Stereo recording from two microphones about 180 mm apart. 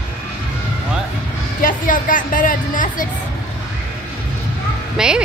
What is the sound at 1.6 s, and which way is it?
A woman's voice, 50° left (ahead or behind).